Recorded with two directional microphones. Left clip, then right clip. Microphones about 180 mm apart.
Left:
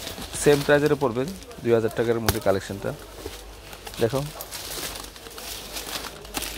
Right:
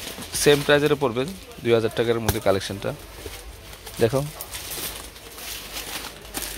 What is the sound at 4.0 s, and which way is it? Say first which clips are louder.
Speech: right 3 dB; 20° right (ahead or behind).